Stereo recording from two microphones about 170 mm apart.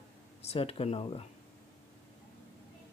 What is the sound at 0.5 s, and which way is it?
Speech, 35° left (ahead or behind).